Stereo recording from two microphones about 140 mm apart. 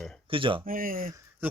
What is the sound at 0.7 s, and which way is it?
Speech, 85° right.